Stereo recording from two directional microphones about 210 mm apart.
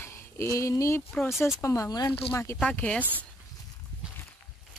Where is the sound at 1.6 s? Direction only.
15° left (ahead or behind).